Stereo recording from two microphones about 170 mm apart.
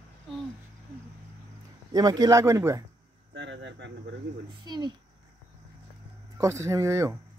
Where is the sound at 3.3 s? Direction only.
90° right.